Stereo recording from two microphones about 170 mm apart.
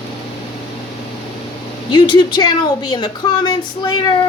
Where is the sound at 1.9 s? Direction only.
25° left (ahead or behind).